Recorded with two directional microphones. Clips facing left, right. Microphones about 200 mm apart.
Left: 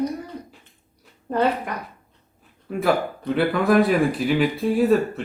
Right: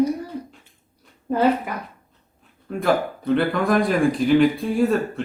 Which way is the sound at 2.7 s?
5° left (ahead or behind).